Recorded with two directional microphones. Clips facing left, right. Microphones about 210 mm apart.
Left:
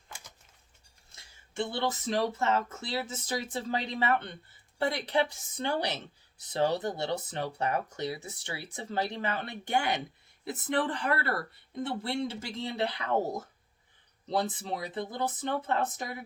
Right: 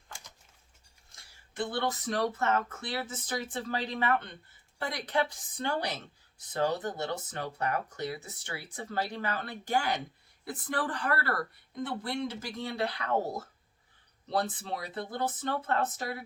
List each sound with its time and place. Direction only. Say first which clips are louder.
1.5 s speech: left 1 dB; 25° left (ahead or behind)
14.6 s speech: left 2 dB; 20° left (ahead or behind)